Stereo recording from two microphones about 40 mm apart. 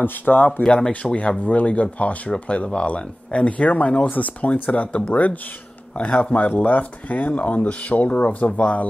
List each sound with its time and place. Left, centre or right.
0.0 s speech: left
0.7 s speech: left
1.4 s speech: left
6.5 s speech: left